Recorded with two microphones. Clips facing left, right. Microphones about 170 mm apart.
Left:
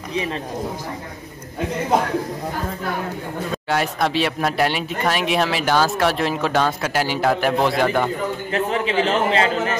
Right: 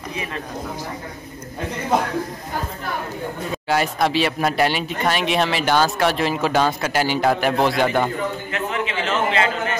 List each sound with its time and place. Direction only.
3.6 s speech: centre (ahead or behind)
8.5 s a man's voice: 35° left (ahead or behind)